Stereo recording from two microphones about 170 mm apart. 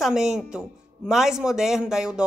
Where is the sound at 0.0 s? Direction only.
Centre (ahead or behind).